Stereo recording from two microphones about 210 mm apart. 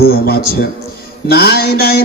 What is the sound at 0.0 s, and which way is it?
A man's voice, 45° left (ahead or behind).